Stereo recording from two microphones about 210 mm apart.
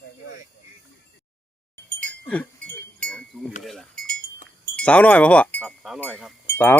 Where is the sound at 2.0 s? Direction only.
5° left (ahead or behind).